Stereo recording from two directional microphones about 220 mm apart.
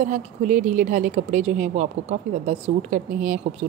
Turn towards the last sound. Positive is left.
turn(degrees=-35)  # may be behind; listen again after turning